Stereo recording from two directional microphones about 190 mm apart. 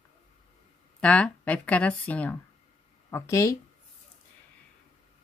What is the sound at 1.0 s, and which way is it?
Speech, 5° left (ahead or behind).